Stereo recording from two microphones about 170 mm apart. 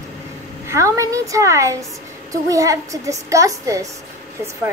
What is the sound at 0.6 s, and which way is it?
A woman's voice, 15° right (ahead or behind).